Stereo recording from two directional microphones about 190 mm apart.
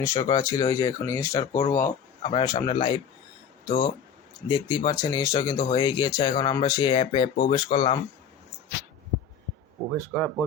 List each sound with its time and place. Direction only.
0.0 s speech: 15° left (ahead or behind)
10.1 s speech: 10° left (ahead or behind)